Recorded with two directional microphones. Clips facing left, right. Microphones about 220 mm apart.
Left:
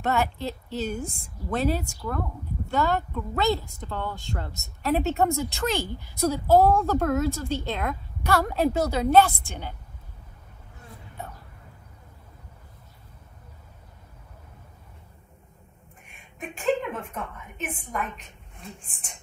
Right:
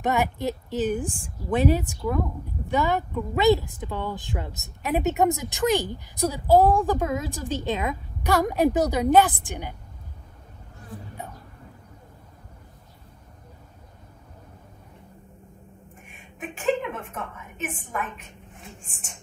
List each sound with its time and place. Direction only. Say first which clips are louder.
0.0 s a woman's voice: right 2 dB; 15° right (ahead or behind)
16.3 s a woman's voice: even; centre (ahead or behind)